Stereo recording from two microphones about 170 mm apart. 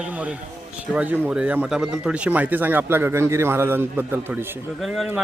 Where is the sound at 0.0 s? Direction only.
10° right (ahead or behind).